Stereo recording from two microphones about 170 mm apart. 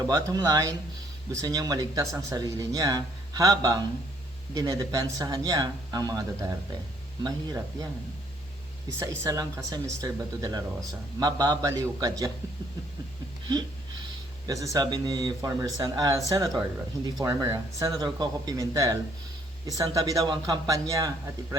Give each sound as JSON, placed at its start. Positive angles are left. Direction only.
{"t": 0.1, "sound": "speech", "side_deg": -20}
{"t": 9.0, "sound": "speech", "side_deg": -20}
{"t": 14.4, "sound": "speech", "side_deg": -20}